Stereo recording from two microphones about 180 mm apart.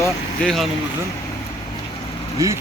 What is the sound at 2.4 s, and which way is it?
Speech, 20° right (ahead or behind).